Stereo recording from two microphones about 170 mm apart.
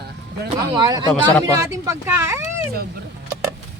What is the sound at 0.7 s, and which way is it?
Speech, 25° right (ahead or behind).